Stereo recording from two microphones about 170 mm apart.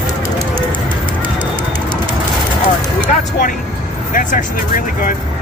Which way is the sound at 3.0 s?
50° left (ahead or behind).